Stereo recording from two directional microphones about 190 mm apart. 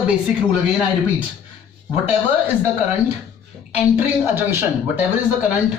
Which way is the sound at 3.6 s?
10° right (ahead or behind).